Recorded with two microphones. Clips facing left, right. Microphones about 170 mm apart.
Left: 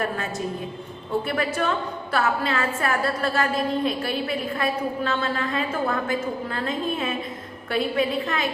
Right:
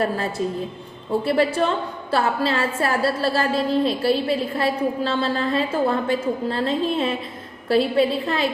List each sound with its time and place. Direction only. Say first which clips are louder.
0.0 s a woman's voice: right 4 dB; 30° right (ahead or behind)